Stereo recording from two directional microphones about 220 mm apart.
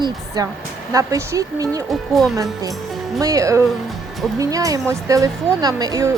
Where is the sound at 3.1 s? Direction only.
15° right (ahead or behind).